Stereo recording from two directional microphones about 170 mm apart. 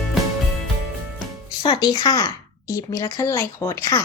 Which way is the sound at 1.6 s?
25° left (ahead or behind).